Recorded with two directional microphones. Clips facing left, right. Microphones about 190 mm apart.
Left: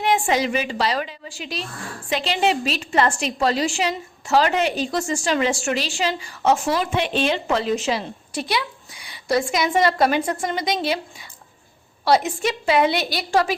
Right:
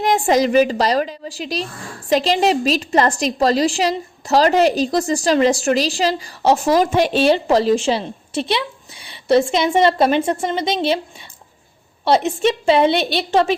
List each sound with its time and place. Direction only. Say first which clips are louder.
0.0 s a woman's voice: right 5 dB; 40° right (ahead or behind)
12.0 s a woman's voice: right 4 dB; 25° right (ahead or behind)